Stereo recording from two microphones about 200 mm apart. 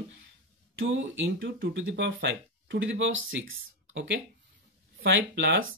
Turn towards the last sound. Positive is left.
turn(degrees=-70)  # may be behind; listen again after turning